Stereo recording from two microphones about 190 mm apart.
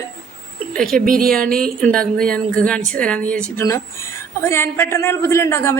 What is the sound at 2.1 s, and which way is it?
A woman's voice, 5° left (ahead or behind).